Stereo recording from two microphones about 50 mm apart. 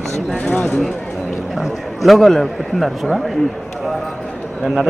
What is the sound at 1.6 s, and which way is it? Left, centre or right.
A man's voice, centre.